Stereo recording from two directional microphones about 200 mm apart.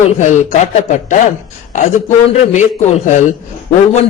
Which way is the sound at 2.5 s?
35° left (ahead or behind).